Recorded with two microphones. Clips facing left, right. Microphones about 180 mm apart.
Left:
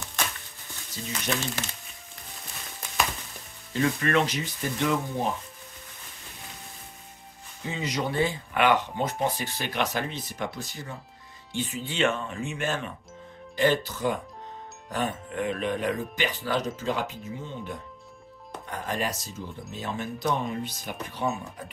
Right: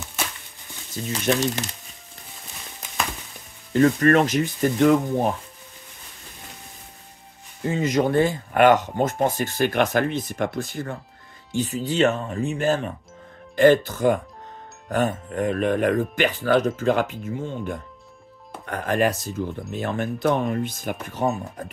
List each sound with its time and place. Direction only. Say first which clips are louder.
1.0 s speech: right 7 dB; 60° right (ahead or behind)
3.7 s speech: right 8 dB; 45° right (ahead or behind)
7.6 s speech: right 9 dB; 50° right (ahead or behind)
11.5 s speech: right 8 dB; 40° right (ahead or behind)
13.6 s speech: right 8 dB; 50° right (ahead or behind)